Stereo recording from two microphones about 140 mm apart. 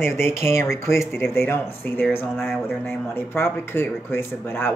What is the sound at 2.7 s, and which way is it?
Speech, 15° left (ahead or behind).